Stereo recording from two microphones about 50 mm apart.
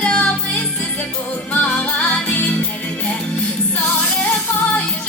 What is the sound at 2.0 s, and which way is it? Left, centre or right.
Music, left.